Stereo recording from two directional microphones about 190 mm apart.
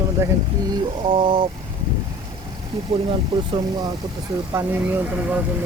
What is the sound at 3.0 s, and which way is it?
Speech, 25° right (ahead or behind).